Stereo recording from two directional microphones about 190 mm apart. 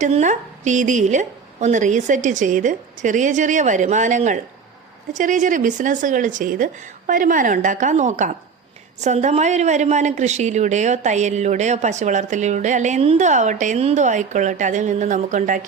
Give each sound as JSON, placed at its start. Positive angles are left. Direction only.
{"t": 0.0, "sound": "a woman's voice", "side_deg": -40}